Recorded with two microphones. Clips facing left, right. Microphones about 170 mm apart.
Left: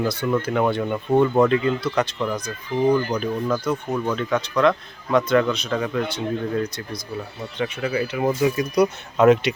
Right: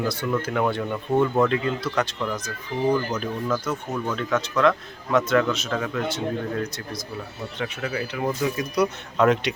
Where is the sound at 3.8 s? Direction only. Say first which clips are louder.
Left 4 dB; 15° left (ahead or behind).